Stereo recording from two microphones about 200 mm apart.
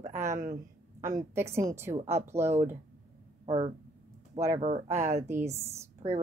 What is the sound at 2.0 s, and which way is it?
Speech, 35° right (ahead or behind).